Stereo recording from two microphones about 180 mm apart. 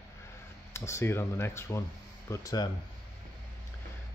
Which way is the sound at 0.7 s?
15° left (ahead or behind).